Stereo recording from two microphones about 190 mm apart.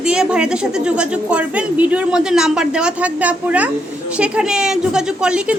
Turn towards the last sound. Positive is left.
turn(degrees=-5)  # may be behind; listen again after turning